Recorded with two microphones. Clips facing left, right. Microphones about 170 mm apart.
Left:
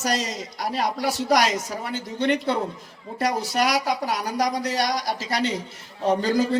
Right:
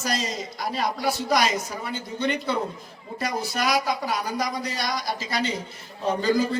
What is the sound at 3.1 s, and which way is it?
A man's voice, 80° left.